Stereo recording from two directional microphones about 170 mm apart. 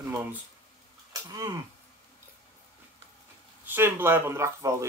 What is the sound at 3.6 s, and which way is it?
Speech, 15° right (ahead or behind).